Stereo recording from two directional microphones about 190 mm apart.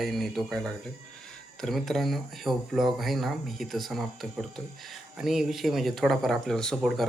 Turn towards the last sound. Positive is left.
turn(degrees=0)  # may be behind; listen again after turning